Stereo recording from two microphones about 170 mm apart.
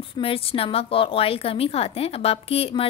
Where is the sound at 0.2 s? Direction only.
35° left (ahead or behind).